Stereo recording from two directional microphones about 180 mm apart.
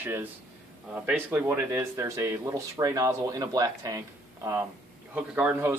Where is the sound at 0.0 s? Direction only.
10° right (ahead or behind).